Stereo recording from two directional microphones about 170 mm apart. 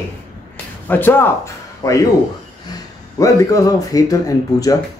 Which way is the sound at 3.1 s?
20° left (ahead or behind).